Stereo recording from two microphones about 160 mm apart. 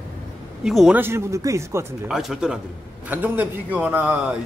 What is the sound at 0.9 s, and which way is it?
Speech, 15° right (ahead or behind).